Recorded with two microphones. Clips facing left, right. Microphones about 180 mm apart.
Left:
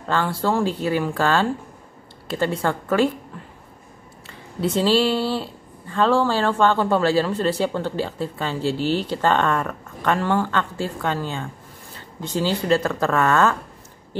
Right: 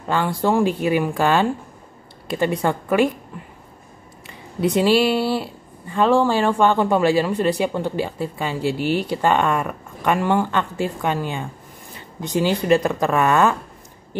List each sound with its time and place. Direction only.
0.1 s speech: 15° right (ahead or behind)
4.3 s speech: 15° right (ahead or behind)